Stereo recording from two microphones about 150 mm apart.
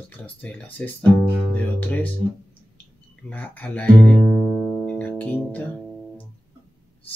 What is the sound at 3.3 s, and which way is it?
Speech, 10° left (ahead or behind).